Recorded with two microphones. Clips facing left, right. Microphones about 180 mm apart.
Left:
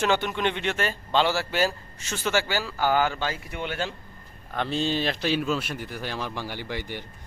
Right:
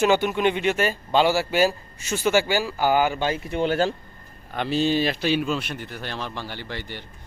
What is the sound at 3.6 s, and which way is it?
Speech, 35° right (ahead or behind).